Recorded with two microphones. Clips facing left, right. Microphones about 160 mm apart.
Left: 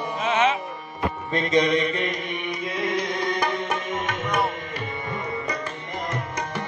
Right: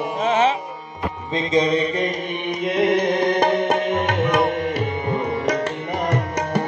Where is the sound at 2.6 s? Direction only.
65° right (ahead or behind).